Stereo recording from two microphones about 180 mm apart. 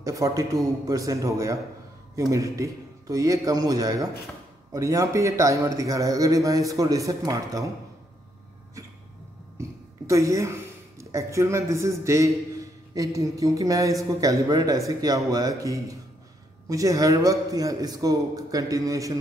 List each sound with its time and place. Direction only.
0.0 s a man's voice: 20° right (ahead or behind)
9.6 s speech: 15° right (ahead or behind)